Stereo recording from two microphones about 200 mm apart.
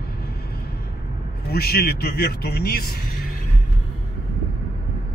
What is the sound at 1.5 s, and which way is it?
A man's voice, 50° left (ahead or behind).